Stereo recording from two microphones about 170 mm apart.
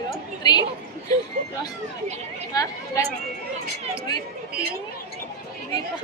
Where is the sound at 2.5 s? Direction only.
20° left (ahead or behind).